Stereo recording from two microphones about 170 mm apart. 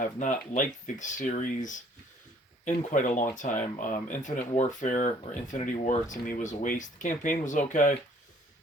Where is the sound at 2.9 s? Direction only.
50° left (ahead or behind).